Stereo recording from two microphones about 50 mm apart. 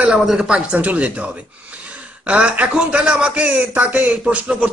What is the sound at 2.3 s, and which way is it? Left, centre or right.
A man's voice, right.